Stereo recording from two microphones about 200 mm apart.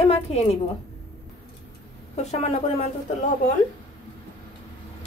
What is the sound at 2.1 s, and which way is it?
Speech, 35° left (ahead or behind).